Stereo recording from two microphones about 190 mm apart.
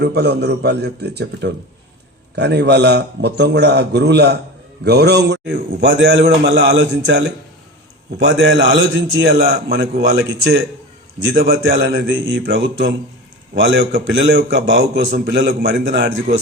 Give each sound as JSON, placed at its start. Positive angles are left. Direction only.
{"t": 0.0, "sound": "a man's voice", "side_deg": -60}